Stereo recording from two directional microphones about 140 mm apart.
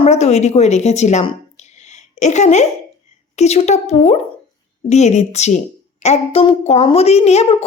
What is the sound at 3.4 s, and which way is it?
A woman's voice, 50° left (ahead or behind).